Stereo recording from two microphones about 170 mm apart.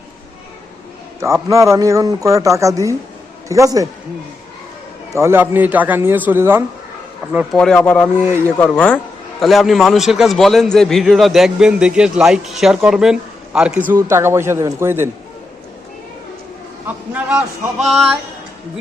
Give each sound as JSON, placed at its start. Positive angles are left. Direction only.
{"t": 1.2, "sound": "a man's voice", "side_deg": -15}
{"t": 5.1, "sound": "a man's voice", "side_deg": -15}
{"t": 7.5, "sound": "a man's voice", "side_deg": 5}
{"t": 16.8, "sound": "a man's voice", "side_deg": -10}